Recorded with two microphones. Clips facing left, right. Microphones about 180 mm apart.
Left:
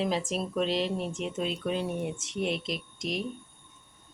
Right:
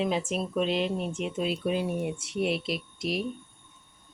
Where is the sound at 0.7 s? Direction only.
35° left (ahead or behind).